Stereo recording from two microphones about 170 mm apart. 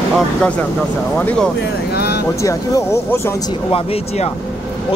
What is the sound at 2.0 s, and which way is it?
Vehicle, 70° left (ahead or behind).